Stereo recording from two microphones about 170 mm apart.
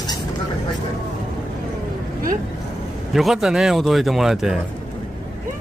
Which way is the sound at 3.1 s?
Centre (ahead or behind).